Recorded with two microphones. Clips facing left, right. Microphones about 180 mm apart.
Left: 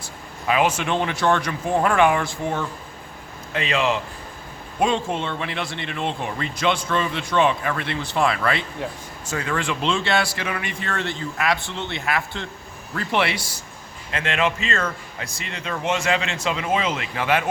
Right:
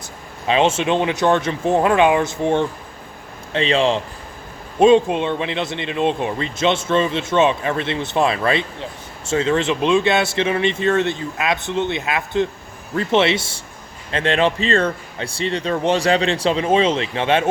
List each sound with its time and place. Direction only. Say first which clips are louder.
0.4 s speech: right 4 dB; 25° right (ahead or behind)
4.8 s speech: right 9 dB; 20° right (ahead or behind)